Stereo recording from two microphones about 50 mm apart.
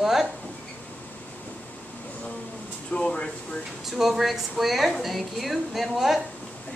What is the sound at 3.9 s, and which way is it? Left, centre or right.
A woman's voice, centre.